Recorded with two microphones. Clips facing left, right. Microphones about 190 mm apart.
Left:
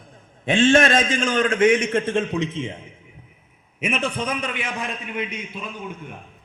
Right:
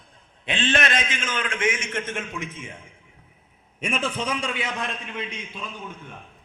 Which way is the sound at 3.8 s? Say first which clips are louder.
Left 3 dB; 5° left (ahead or behind).